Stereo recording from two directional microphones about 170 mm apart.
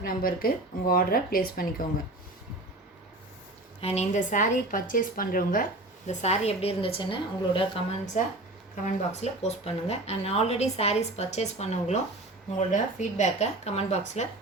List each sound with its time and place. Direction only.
0.0 s speech: 60° left (ahead or behind)
3.8 s speech: 40° left (ahead or behind)
6.1 s speech: 40° left (ahead or behind)
8.1 s speech: 45° left (ahead or behind)